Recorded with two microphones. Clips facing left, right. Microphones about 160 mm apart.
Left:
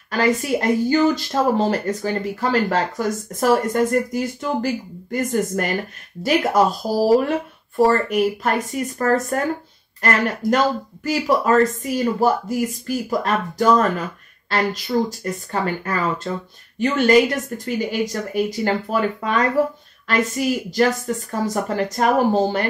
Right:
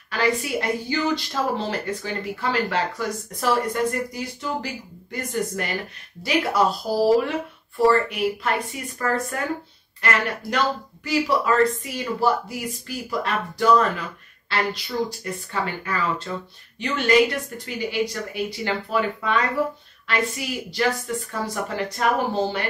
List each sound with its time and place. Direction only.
0.1 s speech: 45° left (ahead or behind)